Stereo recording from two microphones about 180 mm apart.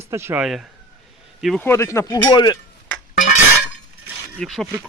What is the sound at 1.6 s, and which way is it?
Speech, 15° left (ahead or behind).